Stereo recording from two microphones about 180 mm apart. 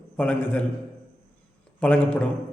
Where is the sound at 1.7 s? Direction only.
10° left (ahead or behind).